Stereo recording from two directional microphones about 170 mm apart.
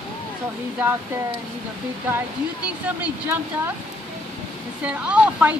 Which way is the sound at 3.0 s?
15° right (ahead or behind).